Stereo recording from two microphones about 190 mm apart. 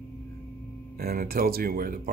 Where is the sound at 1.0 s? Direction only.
50° right (ahead or behind).